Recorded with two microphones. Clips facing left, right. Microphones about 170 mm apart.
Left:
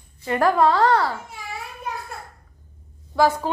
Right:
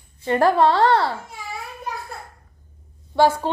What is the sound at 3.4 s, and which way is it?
Speech, 25° right (ahead or behind).